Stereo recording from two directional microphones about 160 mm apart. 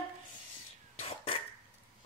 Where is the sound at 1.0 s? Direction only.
35° left (ahead or behind).